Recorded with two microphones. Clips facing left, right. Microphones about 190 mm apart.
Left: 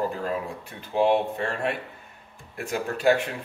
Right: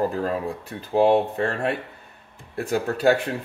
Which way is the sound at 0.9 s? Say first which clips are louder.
Right 4 dB; 35° right (ahead or behind).